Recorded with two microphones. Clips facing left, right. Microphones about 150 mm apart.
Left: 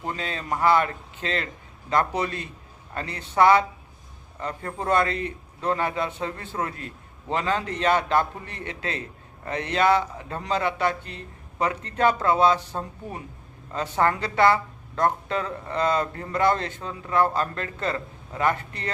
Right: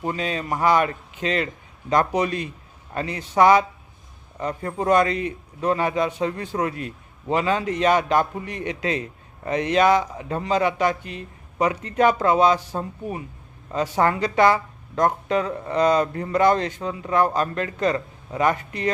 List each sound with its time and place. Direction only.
0.0 s a man's voice: 15° right (ahead or behind)